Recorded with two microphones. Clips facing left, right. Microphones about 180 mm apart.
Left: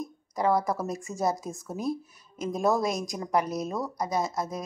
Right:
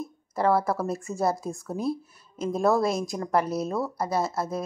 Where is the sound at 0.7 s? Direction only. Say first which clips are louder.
Right 3 dB; 15° left (ahead or behind).